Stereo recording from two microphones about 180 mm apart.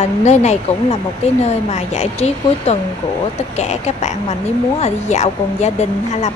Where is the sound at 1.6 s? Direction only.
40° left (ahead or behind).